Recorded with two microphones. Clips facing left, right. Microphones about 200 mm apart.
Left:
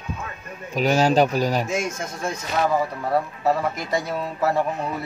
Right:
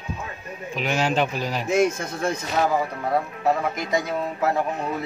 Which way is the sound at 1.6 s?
60° right (ahead or behind).